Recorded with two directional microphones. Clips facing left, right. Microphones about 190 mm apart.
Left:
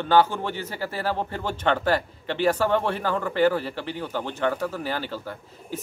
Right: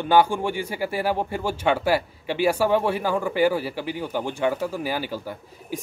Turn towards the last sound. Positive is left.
turn(degrees=-10)  # may be behind; listen again after turning